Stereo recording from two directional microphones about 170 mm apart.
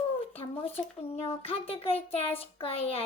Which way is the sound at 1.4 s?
35° left (ahead or behind).